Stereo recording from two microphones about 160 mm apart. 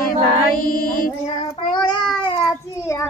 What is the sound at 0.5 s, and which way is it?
Mantra, 60° left (ahead or behind).